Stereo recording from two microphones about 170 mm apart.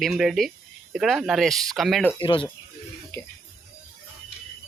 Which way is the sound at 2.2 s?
30° left (ahead or behind).